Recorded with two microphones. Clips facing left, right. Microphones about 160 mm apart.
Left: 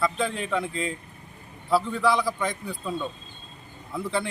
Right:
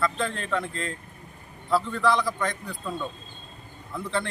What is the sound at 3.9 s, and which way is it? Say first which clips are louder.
Speech: left 1 dB; 10° left (ahead or behind).